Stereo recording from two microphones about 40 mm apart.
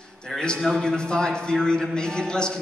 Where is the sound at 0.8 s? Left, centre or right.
Centre.